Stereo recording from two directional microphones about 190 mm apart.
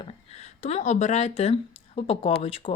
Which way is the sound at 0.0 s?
35° left (ahead or behind).